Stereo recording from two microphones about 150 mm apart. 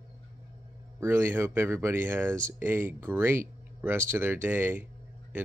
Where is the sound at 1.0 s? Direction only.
15° right (ahead or behind).